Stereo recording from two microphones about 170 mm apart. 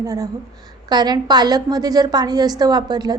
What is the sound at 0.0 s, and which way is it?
A woman's voice, 20° right (ahead or behind).